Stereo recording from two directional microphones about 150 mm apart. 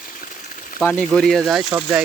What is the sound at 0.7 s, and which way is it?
Speech, 5° left (ahead or behind).